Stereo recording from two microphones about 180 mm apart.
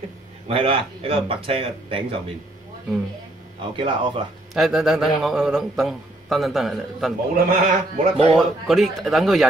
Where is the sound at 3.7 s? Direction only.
30° right (ahead or behind).